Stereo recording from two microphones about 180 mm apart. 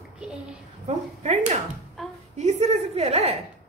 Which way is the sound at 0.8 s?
40° right (ahead or behind).